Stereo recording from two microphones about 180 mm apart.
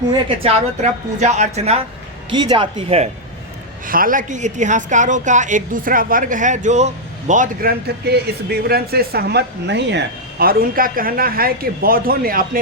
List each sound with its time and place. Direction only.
0.4 s a woman's voice: 35° right (ahead or behind)
2.3 s speech: 25° right (ahead or behind)
3.8 s a woman's voice: 50° right (ahead or behind)